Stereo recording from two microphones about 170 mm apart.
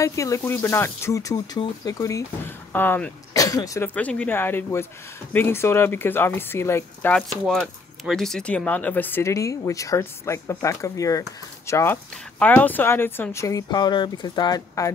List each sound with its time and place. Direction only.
0.0 s speech: 20° left (ahead or behind)
3.9 s speech: 10° left (ahead or behind); by 14.9 s 25° left (ahead or behind)